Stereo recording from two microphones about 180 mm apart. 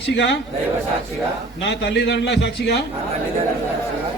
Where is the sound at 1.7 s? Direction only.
70° left (ahead or behind).